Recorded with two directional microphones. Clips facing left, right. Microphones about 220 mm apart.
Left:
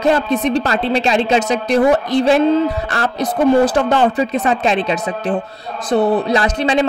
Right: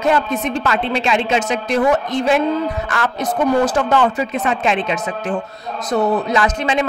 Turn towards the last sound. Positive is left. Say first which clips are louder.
# left 2 dB
turn(degrees=35)  # may be behind; listen again after turning